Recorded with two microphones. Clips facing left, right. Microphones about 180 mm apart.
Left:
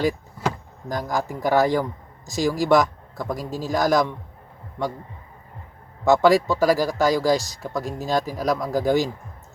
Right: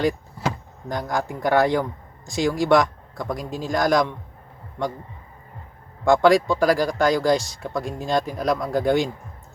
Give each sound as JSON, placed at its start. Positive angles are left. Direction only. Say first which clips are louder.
{"t": 0.9, "sound": "speech", "louder": "even", "side_deg": 0}
{"t": 3.3, "sound": "a man's voice", "louder": "left 1 dB", "side_deg": -20}
{"t": 3.7, "sound": "speech", "louder": "even", "side_deg": 5}
{"t": 6.1, "sound": "speech", "louder": "even", "side_deg": 5}